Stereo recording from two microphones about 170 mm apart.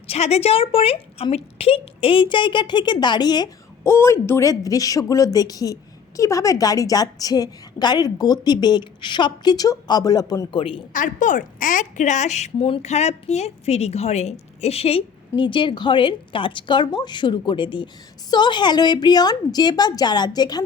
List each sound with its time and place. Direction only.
0.1 s a woman's voice: 40° left (ahead or behind)
10.9 s a woman's voice: 50° left (ahead or behind); by 20.6 s 25° left (ahead or behind)